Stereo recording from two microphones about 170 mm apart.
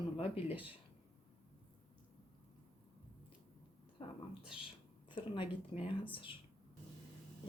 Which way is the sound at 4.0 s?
30° left (ahead or behind).